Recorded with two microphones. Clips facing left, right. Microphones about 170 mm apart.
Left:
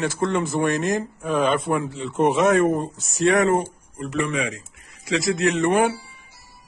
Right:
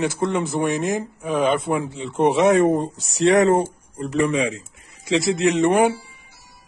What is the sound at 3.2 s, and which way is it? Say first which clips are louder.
Speech: right 3 dB; 30° right (ahead or behind).